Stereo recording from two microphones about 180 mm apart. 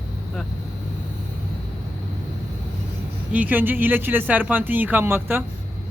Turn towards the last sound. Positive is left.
turn(degrees=-10)  # may be behind; listen again after turning